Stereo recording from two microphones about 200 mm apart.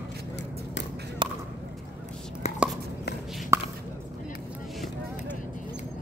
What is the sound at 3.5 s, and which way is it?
Chop, 15° right (ahead or behind).